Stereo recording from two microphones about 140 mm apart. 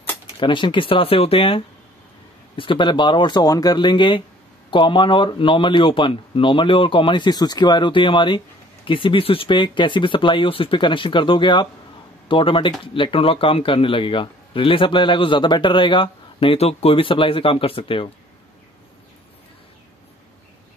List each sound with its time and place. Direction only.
0.4 s speech: 35° left (ahead or behind)